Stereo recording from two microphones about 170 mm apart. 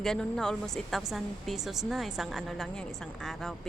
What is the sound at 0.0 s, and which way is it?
A woman's voice, 5° left (ahead or behind).